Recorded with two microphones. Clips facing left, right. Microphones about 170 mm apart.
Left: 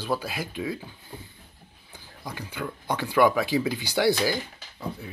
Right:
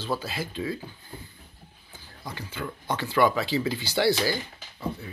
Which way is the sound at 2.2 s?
15° left (ahead or behind).